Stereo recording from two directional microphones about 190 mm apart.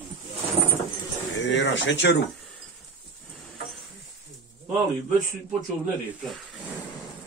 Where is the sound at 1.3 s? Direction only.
65° left (ahead or behind).